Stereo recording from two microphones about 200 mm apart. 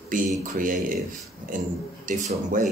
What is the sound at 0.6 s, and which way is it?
Speech, 40° right (ahead or behind).